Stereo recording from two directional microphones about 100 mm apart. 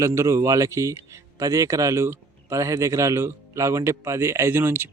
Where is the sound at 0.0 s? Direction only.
30° right (ahead or behind).